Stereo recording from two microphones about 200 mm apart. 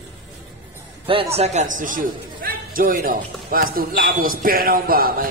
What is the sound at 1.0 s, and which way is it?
A man's voice, 30° right (ahead or behind).